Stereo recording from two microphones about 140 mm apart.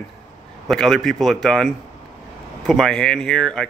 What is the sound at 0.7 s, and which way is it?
A man's voice, centre (ahead or behind).